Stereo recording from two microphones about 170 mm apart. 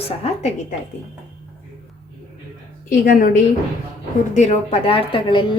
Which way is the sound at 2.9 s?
55° left (ahead or behind).